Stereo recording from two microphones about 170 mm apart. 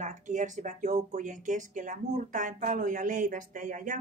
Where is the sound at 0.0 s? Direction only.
45° right (ahead or behind).